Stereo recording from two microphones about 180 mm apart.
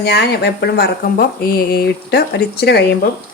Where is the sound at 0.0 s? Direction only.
65° left (ahead or behind).